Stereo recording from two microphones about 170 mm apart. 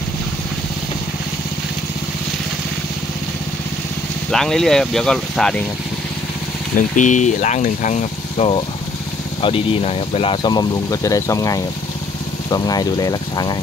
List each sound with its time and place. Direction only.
4.3 s speech: centre (ahead or behind)
7.0 s speech: 45° left (ahead or behind); by 13.6 s 25° left (ahead or behind)